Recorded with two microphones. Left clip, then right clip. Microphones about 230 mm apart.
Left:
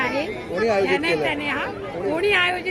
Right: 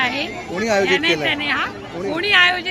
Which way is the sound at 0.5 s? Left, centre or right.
Right.